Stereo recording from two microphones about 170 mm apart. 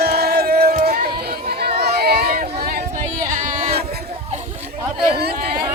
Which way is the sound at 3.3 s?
45° right (ahead or behind).